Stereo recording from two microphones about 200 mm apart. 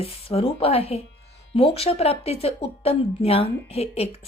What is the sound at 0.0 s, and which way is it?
A woman's voice, 30° left (ahead or behind).